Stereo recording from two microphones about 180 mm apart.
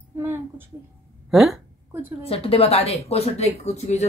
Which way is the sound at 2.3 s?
30° left (ahead or behind).